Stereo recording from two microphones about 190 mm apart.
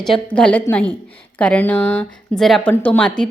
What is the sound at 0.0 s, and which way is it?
A woman's voice, 5° left (ahead or behind).